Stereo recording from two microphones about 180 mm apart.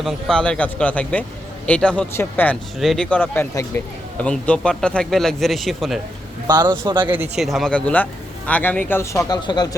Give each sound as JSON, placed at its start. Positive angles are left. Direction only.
{"t": 0.0, "sound": "speech", "side_deg": 5}
{"t": 6.5, "sound": "a man's voice", "side_deg": -25}
{"t": 7.1, "sound": "speech", "side_deg": -5}